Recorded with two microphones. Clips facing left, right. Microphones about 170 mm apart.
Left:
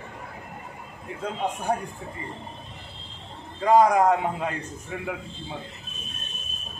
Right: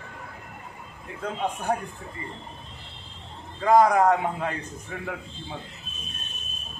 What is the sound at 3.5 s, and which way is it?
A man's voice, 10° left (ahead or behind).